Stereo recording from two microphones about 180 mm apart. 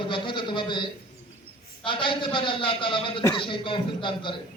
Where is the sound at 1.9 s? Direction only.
30° left (ahead or behind).